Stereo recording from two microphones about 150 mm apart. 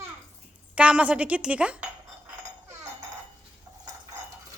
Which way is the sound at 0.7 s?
10° right (ahead or behind).